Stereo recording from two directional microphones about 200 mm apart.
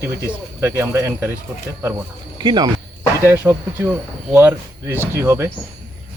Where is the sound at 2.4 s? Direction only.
20° right (ahead or behind).